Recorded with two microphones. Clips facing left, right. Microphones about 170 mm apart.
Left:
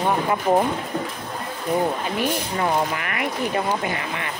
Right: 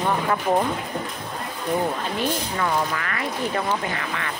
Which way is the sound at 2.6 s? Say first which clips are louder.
Left 2 dB; 20° left (ahead or behind).